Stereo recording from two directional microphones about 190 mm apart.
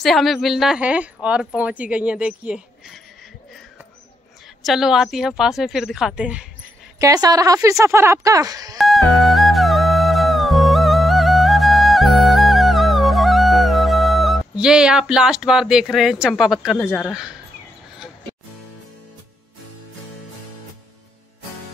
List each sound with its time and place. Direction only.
0.0 s a woman's voice: centre (ahead or behind)
4.6 s a woman's voice: centre (ahead or behind)
7.0 s speech: 20° right (ahead or behind)
8.7 s music: centre (ahead or behind)
16.6 s a woman's voice: centre (ahead or behind)